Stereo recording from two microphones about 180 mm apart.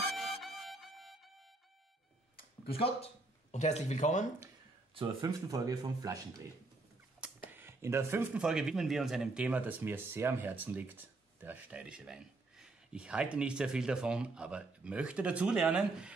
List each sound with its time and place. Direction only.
0.0 s music: centre (ahead or behind)
2.3 s a sound: 55° left (ahead or behind)
3.5 s speech: 40° left (ahead or behind)
4.9 s speech: 20° right (ahead or behind)
7.2 s a sound: 5° right (ahead or behind)
7.5 s speech: 15° right (ahead or behind)